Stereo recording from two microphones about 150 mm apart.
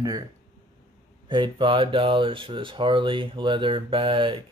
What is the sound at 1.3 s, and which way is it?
Speech, 30° right (ahead or behind).